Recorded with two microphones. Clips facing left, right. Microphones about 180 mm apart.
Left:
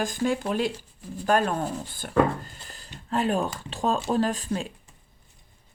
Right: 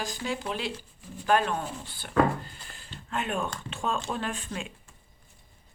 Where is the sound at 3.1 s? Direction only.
35° left (ahead or behind).